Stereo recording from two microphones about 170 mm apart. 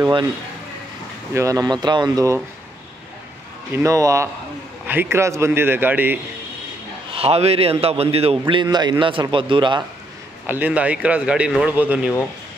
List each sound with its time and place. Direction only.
0.0 s a man's voice: 25° right (ahead or behind)
1.3 s a man's voice: 20° right (ahead or behind)
3.7 s speech: 20° right (ahead or behind)
7.2 s a man's voice: 35° right (ahead or behind)
10.4 s speech: 10° right (ahead or behind)